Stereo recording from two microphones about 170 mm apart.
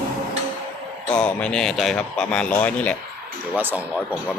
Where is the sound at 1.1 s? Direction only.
5° left (ahead or behind).